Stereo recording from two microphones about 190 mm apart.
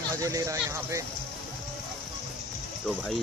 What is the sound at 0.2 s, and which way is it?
Speech, 15° right (ahead or behind).